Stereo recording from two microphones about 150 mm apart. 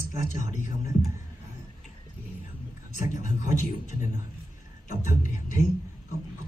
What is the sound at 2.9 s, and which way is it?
A man's voice, 60° left (ahead or behind).